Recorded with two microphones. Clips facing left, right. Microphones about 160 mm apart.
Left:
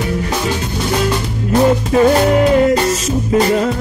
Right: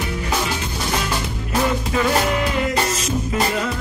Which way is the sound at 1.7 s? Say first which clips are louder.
Left 9 dB; 40° left (ahead or behind).